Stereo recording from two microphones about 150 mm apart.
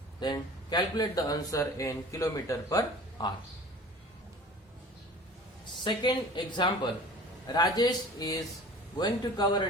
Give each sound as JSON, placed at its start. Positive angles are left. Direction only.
{"t": 0.2, "sound": "speech", "side_deg": 30}
{"t": 5.8, "sound": "speech", "side_deg": 30}